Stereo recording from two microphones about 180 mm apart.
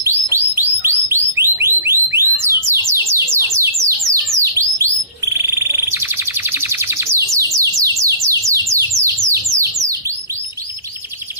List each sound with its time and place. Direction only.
0.0 s bird: 15° right (ahead or behind)
1.6 s alarm: 15° right (ahead or behind)
2.4 s a sound: 15° right (ahead or behind)
5.2 s bird: 15° right (ahead or behind)